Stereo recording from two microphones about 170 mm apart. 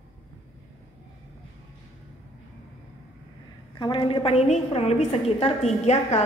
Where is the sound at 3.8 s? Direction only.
30° left (ahead or behind).